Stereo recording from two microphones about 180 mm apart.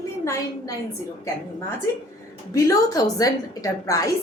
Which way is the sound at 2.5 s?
20° left (ahead or behind).